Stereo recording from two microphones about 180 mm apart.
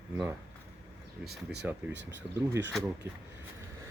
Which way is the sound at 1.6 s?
10° right (ahead or behind).